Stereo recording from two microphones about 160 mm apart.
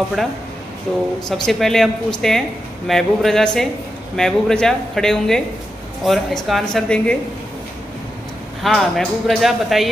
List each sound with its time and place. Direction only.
0.2 s speech: centre (ahead or behind)
8.6 s speech: centre (ahead or behind)